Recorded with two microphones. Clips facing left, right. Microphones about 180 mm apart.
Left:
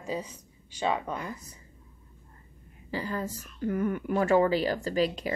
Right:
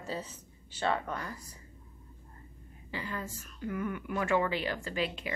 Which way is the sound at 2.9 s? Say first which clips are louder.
Left 6 dB; 40° left (ahead or behind).